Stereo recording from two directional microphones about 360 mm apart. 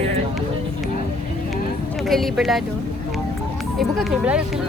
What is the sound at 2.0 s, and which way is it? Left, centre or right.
Speech, centre.